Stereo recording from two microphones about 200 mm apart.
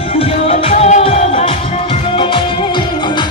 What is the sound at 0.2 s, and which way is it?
Music, 30° left (ahead or behind).